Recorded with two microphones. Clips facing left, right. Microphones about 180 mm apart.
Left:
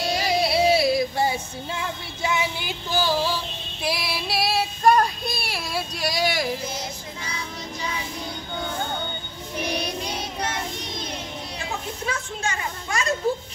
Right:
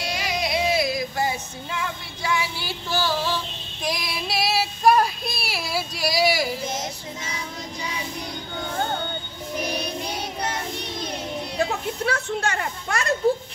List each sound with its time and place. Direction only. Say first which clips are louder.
0.1 s music: left 3 dB; 35° left (ahead or behind); by 3.3 s 10° left (ahead or behind)
3.8 s child singing: left 1 dB; 5° left (ahead or behind)
12.1 s a woman's voice: right 3 dB; 65° right (ahead or behind)